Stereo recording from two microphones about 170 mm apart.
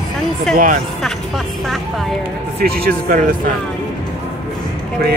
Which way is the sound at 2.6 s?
60° right (ahead or behind).